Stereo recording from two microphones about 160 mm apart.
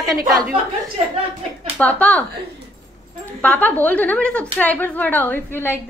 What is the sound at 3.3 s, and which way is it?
A woman's voice, 10° left (ahead or behind).